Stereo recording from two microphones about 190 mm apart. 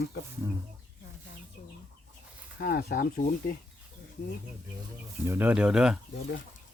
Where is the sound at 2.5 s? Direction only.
50° left (ahead or behind).